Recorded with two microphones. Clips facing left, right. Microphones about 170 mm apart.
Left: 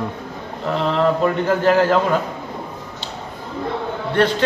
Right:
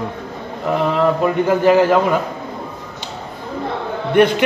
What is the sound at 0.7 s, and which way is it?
A man's voice, 10° right (ahead or behind).